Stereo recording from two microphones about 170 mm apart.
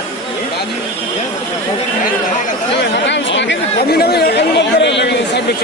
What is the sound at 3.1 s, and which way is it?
Speech, 90° left.